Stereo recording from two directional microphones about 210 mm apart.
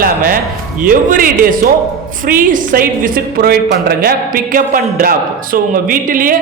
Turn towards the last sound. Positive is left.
turn(degrees=-40)  # may be behind; listen again after turning